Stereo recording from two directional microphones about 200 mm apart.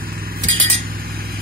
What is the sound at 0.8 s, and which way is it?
Chink, 50° right (ahead or behind).